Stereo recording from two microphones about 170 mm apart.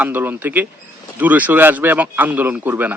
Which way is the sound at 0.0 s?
10° right (ahead or behind).